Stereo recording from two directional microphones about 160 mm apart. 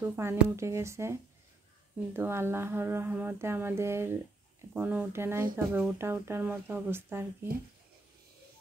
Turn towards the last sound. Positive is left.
turn(degrees=-15)  # may be behind; listen again after turning